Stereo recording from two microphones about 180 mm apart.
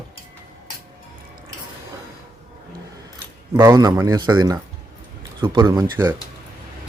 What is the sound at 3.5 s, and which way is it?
Speech, 20° right (ahead or behind).